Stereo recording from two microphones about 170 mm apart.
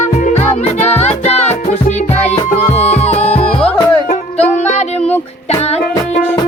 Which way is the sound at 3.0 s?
40° left (ahead or behind).